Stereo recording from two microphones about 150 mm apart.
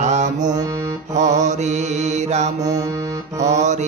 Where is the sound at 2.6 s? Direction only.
25° right (ahead or behind).